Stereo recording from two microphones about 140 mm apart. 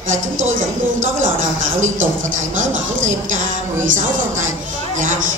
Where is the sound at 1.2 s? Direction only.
65° right (ahead or behind).